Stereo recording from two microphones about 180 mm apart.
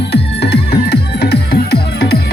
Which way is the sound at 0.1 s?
65° left (ahead or behind).